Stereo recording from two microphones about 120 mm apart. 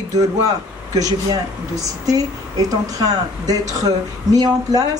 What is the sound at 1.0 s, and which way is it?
A woman's voice, 30° right (ahead or behind).